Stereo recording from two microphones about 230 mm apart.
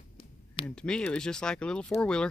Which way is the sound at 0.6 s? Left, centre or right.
Centre.